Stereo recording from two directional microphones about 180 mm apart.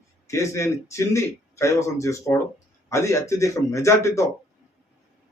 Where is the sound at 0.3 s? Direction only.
15° left (ahead or behind).